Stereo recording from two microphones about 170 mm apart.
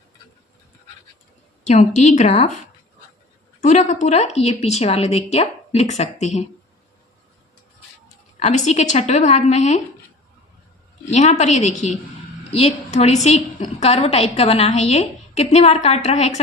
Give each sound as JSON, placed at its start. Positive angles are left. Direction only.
{"t": 1.6, "sound": "a woman's voice", "side_deg": 40}
{"t": 3.6, "sound": "a woman's voice", "side_deg": 45}
{"t": 8.4, "sound": "a woman's voice", "side_deg": 40}
{"t": 11.1, "sound": "a woman's voice", "side_deg": 45}